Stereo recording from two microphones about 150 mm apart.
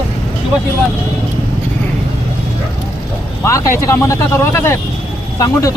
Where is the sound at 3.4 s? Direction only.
20° left (ahead or behind).